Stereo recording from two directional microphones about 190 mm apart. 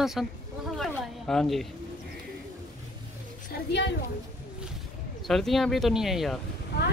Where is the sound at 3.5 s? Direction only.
55° left (ahead or behind).